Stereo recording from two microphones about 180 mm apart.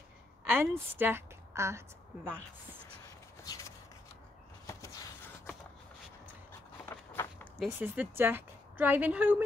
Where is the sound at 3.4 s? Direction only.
20° left (ahead or behind).